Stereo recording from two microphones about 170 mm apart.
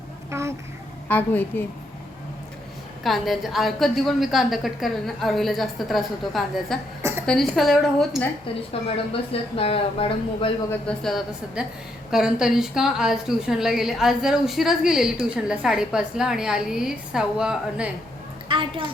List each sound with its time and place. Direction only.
0.3 s a sound: 15° right (ahead or behind)
1.0 s a woman's voice: 10° left (ahead or behind)
3.0 s a woman's voice: centre (ahead or behind)
9.3 s speech: 35° left (ahead or behind)
10.7 s a woman's voice: 5° left (ahead or behind)
18.4 s a woman's voice: 30° right (ahead or behind)